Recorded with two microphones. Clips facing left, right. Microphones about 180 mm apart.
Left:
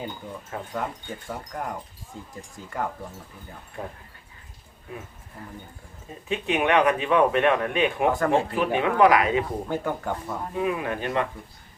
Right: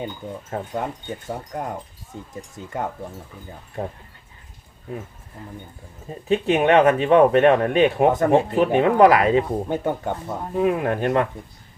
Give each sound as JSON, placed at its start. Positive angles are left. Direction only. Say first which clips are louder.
{"t": 0.2, "sound": "speech", "louder": "right 5 dB", "side_deg": -25}
{"t": 6.2, "sound": "speech", "louder": "right 6 dB", "side_deg": -35}
{"t": 8.1, "sound": "speech", "louder": "right 5 dB", "side_deg": -20}
{"t": 8.7, "sound": "speech", "louder": "right 4 dB", "side_deg": -40}
{"t": 9.6, "sound": "speech", "louder": "right 4 dB", "side_deg": -20}
{"t": 10.5, "sound": "speech", "louder": "right 7 dB", "side_deg": -45}